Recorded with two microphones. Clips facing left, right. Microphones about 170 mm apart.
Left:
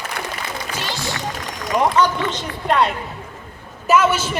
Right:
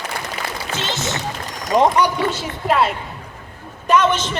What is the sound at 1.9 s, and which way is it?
A man's voice, 10° right (ahead or behind).